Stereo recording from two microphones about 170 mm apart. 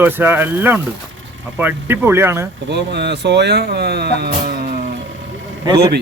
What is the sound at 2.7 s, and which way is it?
Speech, 85° right.